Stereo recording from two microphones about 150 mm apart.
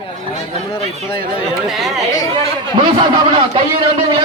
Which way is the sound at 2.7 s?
30° right (ahead or behind).